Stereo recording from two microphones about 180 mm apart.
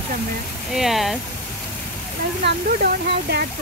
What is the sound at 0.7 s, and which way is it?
Speech, centre (ahead or behind).